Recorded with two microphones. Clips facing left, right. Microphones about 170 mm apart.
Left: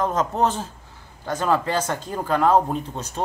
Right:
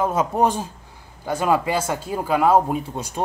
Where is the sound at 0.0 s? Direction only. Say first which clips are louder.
Right 2 dB; 10° right (ahead or behind).